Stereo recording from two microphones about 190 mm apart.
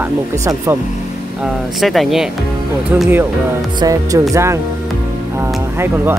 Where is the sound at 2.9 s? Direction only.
10° right (ahead or behind).